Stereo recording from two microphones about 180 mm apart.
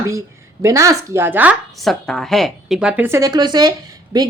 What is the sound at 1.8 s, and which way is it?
A woman's voice, centre (ahead or behind).